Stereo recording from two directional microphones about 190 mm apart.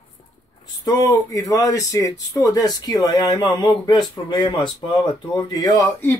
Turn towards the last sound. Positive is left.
turn(degrees=15)  # may be behind; listen again after turning